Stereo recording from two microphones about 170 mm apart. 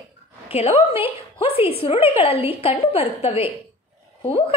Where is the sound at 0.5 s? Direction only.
35° left (ahead or behind).